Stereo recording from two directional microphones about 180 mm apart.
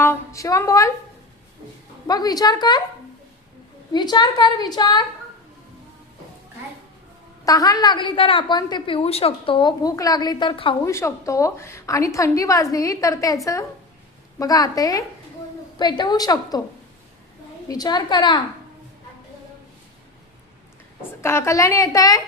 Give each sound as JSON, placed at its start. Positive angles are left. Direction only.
{"t": 0.0, "sound": "a woman's voice", "side_deg": 15}
{"t": 2.0, "sound": "a woman's voice", "side_deg": 20}
{"t": 3.9, "sound": "a woman's voice", "side_deg": 25}
{"t": 7.4, "sound": "a woman's voice", "side_deg": 20}
{"t": 10.8, "sound": "a woman's voice", "side_deg": 15}
{"t": 17.7, "sound": "a woman's voice", "side_deg": 20}
{"t": 21.2, "sound": "a woman's voice", "side_deg": 15}